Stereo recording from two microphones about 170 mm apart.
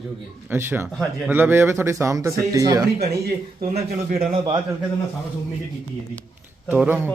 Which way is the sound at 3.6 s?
45° right (ahead or behind).